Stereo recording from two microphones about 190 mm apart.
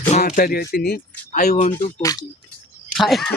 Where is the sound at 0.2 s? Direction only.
50° left (ahead or behind).